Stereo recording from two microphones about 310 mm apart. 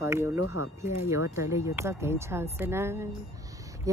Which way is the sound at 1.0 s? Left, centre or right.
Centre.